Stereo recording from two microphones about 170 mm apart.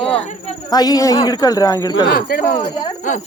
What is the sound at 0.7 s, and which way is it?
Speech, 25° left (ahead or behind).